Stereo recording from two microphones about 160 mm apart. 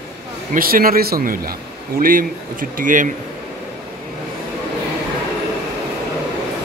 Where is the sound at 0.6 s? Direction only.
65° right (ahead or behind).